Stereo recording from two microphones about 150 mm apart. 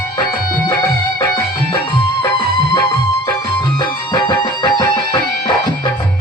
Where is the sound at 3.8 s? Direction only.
30° left (ahead or behind).